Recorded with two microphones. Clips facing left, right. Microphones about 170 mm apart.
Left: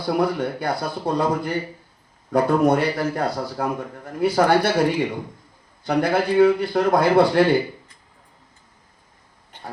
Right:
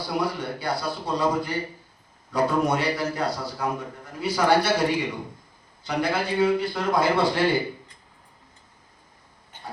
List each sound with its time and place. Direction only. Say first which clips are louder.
0.1 s a man's voice: left 7 dB; 55° left (ahead or behind)